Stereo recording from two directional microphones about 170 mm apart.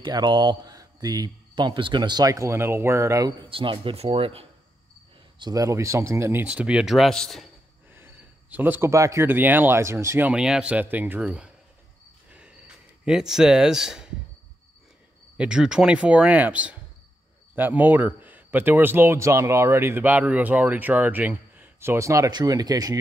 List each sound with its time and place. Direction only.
0.0 s speech: 25° right (ahead or behind)
5.4 s a man's voice: 20° right (ahead or behind); by 7.4 s centre (ahead or behind)
7.9 s a man's voice: 10° right (ahead or behind)
12.3 s a sound: 5° right (ahead or behind)
15.3 s a man's voice: 5° right (ahead or behind); by 22.9 s 20° right (ahead or behind)